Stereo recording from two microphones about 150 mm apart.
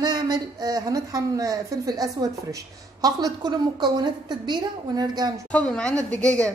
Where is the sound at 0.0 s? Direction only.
30° right (ahead or behind).